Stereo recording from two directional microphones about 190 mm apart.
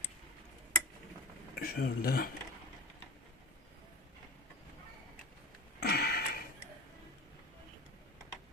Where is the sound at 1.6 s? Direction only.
50° left (ahead or behind).